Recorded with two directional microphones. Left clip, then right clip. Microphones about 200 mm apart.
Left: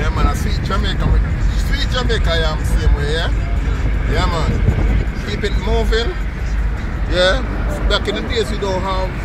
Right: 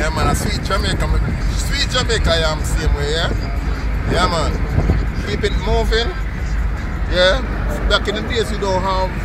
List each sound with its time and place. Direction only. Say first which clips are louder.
0.0 s vehicle: right 3 dB; centre (ahead or behind)
1.8 s speech: right 3 dB; centre (ahead or behind)
5.7 s speech: even; centre (ahead or behind)
7.2 s speech: right 1 dB; centre (ahead or behind)
8.6 s speech: right 2 dB; 15° right (ahead or behind)